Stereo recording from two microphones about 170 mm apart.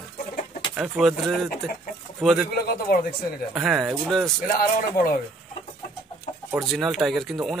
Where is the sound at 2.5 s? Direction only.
60° left (ahead or behind).